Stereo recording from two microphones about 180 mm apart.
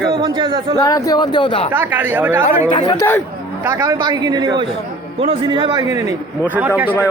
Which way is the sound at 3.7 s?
15° right (ahead or behind).